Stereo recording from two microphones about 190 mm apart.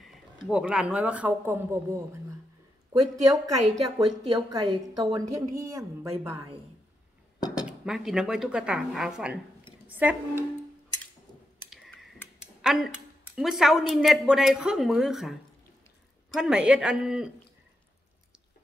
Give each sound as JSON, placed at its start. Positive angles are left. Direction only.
{"t": 0.0, "sound": "a woman's voice", "side_deg": 0}
{"t": 7.8, "sound": "speech", "side_deg": -5}
{"t": 12.6, "sound": "speech", "side_deg": 0}
{"t": 16.3, "sound": "speech", "side_deg": -5}